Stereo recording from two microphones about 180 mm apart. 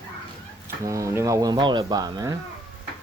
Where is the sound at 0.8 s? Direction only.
15° right (ahead or behind).